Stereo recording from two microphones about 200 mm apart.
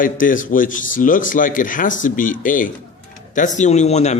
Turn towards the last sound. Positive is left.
turn(degrees=35)  # may be behind; listen again after turning